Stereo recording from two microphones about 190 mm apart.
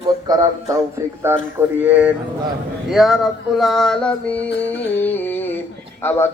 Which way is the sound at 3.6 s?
Centre (ahead or behind).